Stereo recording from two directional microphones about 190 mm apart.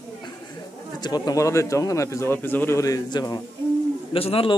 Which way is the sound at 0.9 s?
20° left (ahead or behind).